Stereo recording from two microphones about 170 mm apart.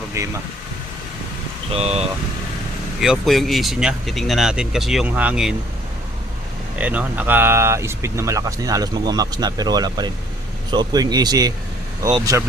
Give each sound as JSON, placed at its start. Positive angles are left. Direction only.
{"t": 0.2, "sound": "speech", "side_deg": -15}
{"t": 1.7, "sound": "speech", "side_deg": -40}
{"t": 3.0, "sound": "speech", "side_deg": 0}
{"t": 6.7, "sound": "speech", "side_deg": -10}